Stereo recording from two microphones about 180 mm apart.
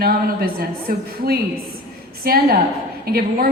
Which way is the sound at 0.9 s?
55° right (ahead or behind).